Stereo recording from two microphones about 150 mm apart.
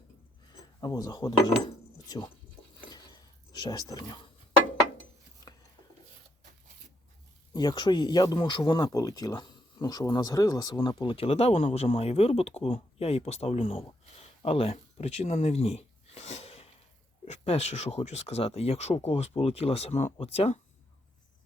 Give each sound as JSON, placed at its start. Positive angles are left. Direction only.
{"t": 0.8, "sound": "speech", "side_deg": 25}
{"t": 3.6, "sound": "speech", "side_deg": 25}
{"t": 7.5, "sound": "speech", "side_deg": 30}
{"t": 10.8, "sound": "speech", "side_deg": 35}
{"t": 14.2, "sound": "a sound", "side_deg": 40}
{"t": 17.2, "sound": "speech", "side_deg": 45}